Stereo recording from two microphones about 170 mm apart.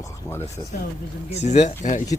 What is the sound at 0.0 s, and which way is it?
Speech, 15° left (ahead or behind).